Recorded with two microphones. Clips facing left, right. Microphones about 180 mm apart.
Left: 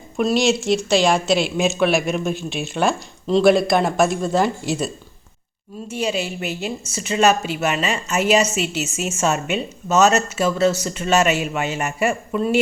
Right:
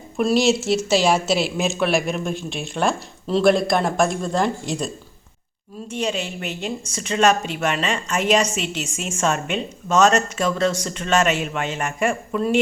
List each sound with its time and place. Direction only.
0.2 s speech: 5° right (ahead or behind)
5.9 s a woman's voice: 10° left (ahead or behind)